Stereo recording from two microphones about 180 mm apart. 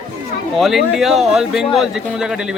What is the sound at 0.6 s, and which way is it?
Speech, centre (ahead or behind).